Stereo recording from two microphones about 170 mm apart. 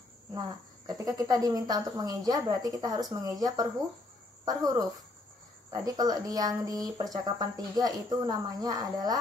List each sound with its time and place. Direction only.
0.3 s speech: 20° right (ahead or behind)